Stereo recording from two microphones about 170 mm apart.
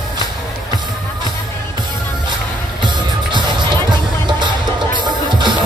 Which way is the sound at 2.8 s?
25° right (ahead or behind).